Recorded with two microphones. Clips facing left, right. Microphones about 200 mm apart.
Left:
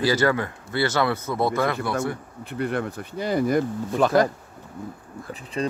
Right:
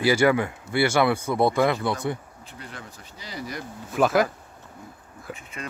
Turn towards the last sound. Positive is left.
turn(degrees=30)  # may be behind; listen again after turning